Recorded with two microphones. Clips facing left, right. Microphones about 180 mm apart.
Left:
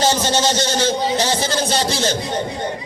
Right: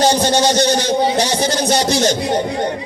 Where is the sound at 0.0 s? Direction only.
15° right (ahead or behind).